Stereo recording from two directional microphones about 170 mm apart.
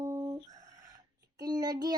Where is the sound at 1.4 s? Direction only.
25° right (ahead or behind).